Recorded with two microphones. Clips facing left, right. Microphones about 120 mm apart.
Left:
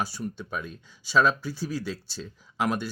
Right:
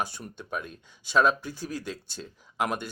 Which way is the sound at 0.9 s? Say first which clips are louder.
Even; 15° right (ahead or behind).